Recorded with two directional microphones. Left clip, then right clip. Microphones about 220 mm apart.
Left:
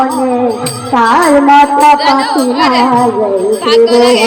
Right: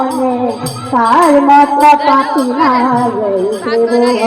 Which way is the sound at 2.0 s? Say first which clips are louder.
Left 1 dB; 20° left (ahead or behind).